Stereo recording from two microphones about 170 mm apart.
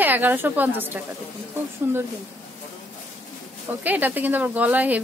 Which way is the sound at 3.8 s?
10° right (ahead or behind).